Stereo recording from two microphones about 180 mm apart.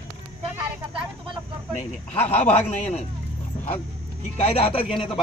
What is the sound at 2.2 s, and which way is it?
Speech, 35° left (ahead or behind).